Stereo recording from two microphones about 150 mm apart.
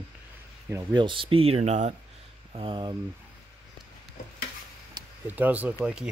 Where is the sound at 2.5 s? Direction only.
35° right (ahead or behind).